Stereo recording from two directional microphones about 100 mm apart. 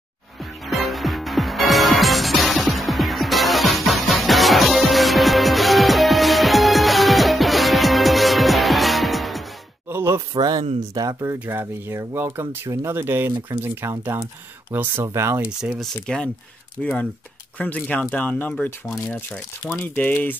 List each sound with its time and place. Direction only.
0.7 s music: centre (ahead or behind)
9.8 s a sound: 25° right (ahead or behind)
10.8 s speech: 35° right (ahead or behind)
11.3 s speech: 20° right (ahead or behind)
15.4 s speech: 10° right (ahead or behind)
15.8 s speech: 5° left (ahead or behind)